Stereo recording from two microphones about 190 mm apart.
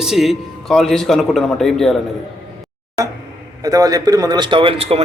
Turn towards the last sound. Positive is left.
turn(degrees=-30)  # may be behind; listen again after turning